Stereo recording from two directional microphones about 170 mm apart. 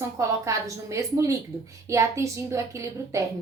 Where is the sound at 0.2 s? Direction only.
15° right (ahead or behind).